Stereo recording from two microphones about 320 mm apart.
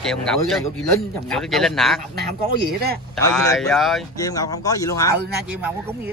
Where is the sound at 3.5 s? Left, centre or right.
Centre.